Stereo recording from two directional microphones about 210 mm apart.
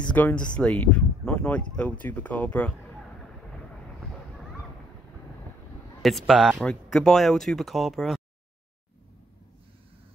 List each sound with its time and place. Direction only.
0.1 s speech: 5° left (ahead or behind)
6.0 s speech: centre (ahead or behind)